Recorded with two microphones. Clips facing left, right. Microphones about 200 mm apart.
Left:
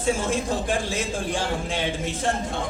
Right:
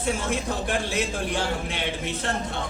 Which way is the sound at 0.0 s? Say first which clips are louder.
Left 3 dB; 60° right (ahead or behind).